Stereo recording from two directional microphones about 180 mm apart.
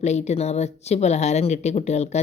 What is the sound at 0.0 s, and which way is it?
Speech, 40° left (ahead or behind).